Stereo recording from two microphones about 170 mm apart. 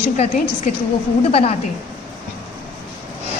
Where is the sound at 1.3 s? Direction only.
35° left (ahead or behind).